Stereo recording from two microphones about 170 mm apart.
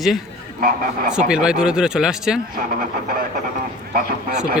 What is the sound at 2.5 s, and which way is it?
Speech, 55° right (ahead or behind).